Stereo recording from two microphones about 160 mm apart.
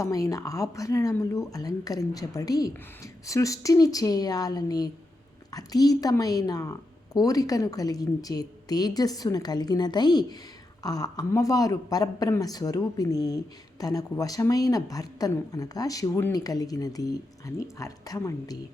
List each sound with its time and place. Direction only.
0.0 s speech: 20° left (ahead or behind)